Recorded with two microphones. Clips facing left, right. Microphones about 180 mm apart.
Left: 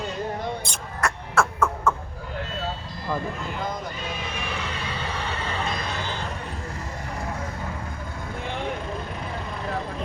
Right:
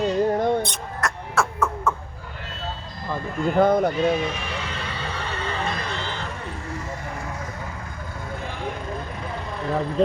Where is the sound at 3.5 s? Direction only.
60° right (ahead or behind).